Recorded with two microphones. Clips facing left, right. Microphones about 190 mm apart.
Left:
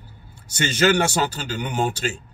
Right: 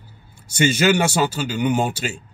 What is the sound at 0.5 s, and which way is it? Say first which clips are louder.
A man's voice: right 2 dB; 10° right (ahead or behind).